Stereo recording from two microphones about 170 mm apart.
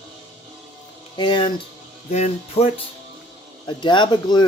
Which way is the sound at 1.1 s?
25° left (ahead or behind).